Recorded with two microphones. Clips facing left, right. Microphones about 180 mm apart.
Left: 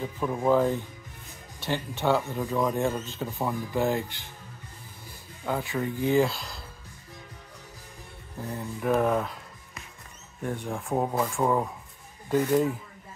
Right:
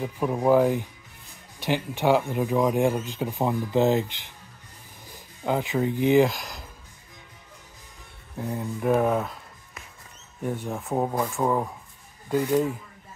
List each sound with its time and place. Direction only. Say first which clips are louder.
0.0 s speech: right 3 dB; 15° right (ahead or behind)
5.4 s speech: right 5 dB; 20° right (ahead or behind)
8.4 s speech: right 4 dB; 10° right (ahead or behind)
10.4 s speech: right 2 dB; 5° right (ahead or behind)